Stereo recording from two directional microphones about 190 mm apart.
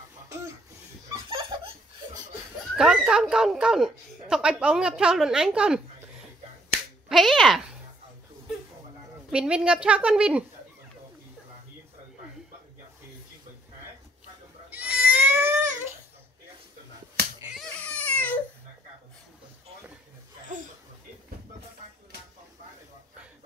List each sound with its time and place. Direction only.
0.3 s a sound: 15° right (ahead or behind)
1.1 s laughter: 25° right (ahead or behind)
2.7 s speech: 5° right (ahead or behind)
7.1 s speech: centre (ahead or behind)
9.3 s speech: 5° right (ahead or behind)
14.7 s goat: 10° right (ahead or behind)
17.6 s baby cry: 5° left (ahead or behind)